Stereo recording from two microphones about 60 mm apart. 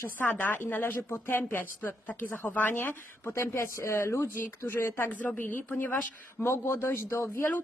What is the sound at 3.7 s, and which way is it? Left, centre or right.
Speech, left.